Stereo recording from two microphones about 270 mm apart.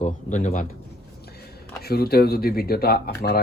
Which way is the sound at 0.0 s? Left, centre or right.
Left.